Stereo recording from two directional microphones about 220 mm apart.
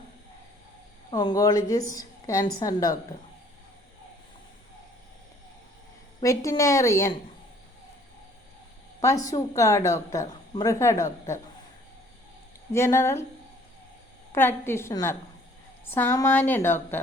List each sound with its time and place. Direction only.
1.1 s a woman's voice: 20° left (ahead or behind)
6.2 s a woman's voice: 15° left (ahead or behind)
9.0 s a woman's voice: 15° left (ahead or behind)
12.7 s a woman's voice: 10° left (ahead or behind)
14.3 s a woman's voice: 10° left (ahead or behind)